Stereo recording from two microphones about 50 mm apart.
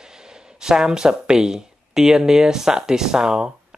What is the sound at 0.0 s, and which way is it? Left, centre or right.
Speech, centre.